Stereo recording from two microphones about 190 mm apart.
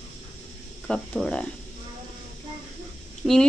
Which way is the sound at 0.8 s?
5° left (ahead or behind).